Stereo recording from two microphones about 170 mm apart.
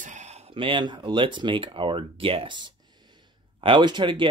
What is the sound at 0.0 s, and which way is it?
Speech, 45° right (ahead or behind).